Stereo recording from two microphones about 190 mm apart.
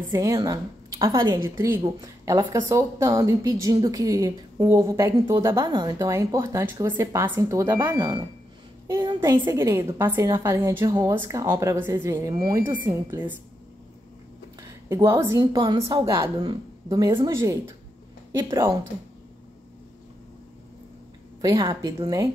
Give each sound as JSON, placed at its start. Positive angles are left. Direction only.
{"t": 0.1, "sound": "a woman's voice", "side_deg": -20}
{"t": 14.6, "sound": "a woman's voice", "side_deg": -15}
{"t": 21.4, "sound": "a woman's voice", "side_deg": -20}